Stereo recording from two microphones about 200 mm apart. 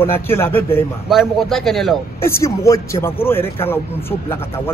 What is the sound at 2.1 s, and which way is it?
A man's voice, 15° left (ahead or behind).